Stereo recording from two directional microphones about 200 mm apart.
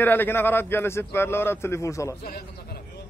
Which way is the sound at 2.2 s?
50° left (ahead or behind).